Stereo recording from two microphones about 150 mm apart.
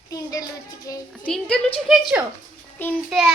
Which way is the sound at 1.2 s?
5° left (ahead or behind).